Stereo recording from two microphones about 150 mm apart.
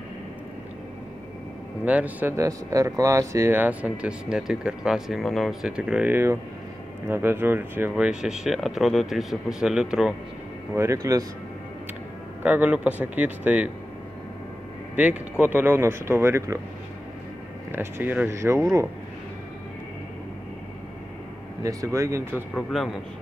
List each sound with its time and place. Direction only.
1.9 s speech: 10° right (ahead or behind)
10.7 s speech: 20° right (ahead or behind)
12.4 s speech: 10° right (ahead or behind)
15.0 s speech: 10° right (ahead or behind)
17.6 s speech: 15° right (ahead or behind)
21.6 s speech: 20° right (ahead or behind)
22.5 s speech: centre (ahead or behind)